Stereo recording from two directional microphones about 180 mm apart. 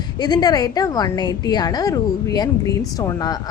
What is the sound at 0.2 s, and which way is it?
Speech, 25° left (ahead or behind).